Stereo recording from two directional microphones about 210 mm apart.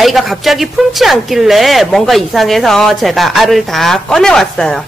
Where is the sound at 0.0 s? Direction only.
Centre (ahead or behind).